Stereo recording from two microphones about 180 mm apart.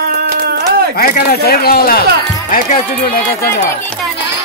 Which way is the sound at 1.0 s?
55° left (ahead or behind).